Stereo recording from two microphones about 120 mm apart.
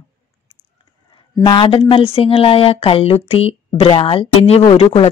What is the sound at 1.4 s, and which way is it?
Speech, 45° left (ahead or behind).